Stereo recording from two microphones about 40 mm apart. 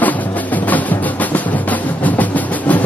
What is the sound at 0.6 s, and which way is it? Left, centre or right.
Music, left.